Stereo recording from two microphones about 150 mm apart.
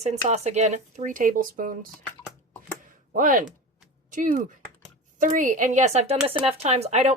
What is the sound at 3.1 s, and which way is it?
Speech, 65° right (ahead or behind).